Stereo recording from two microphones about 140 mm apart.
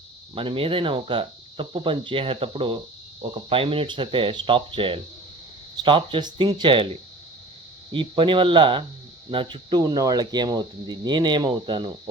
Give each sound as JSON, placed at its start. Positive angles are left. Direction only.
{"t": 0.3, "sound": "speech", "side_deg": -40}
{"t": 7.9, "sound": "speech", "side_deg": -35}